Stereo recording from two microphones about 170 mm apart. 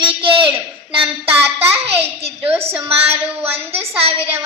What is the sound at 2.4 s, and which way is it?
A woman's voice, 10° right (ahead or behind).